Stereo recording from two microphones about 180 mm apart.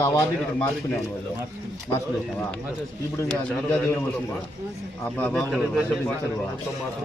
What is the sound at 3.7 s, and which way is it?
Speech, 10° left (ahead or behind).